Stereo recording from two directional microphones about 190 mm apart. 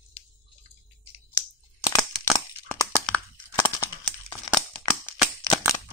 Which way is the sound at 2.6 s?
15° left (ahead or behind).